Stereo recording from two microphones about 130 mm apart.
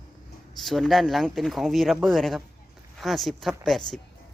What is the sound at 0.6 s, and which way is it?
Speech, centre (ahead or behind).